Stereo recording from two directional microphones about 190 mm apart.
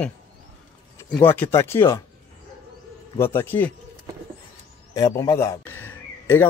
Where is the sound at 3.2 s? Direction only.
10° left (ahead or behind).